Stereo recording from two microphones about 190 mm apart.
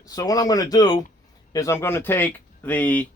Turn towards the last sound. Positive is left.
turn(degrees=10)  # may be behind; listen again after turning